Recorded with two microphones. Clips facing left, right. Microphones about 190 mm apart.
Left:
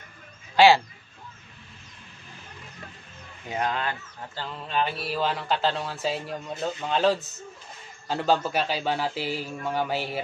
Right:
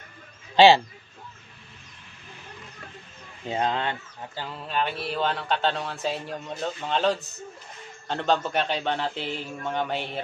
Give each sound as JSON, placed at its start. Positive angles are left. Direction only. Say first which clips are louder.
{"t": 0.6, "sound": "speech", "louder": "right 2 dB", "side_deg": -20}
{"t": 3.4, "sound": "speech", "louder": "right 2 dB", "side_deg": -25}
{"t": 4.4, "sound": "a man's voice", "louder": "left 1 dB", "side_deg": -5}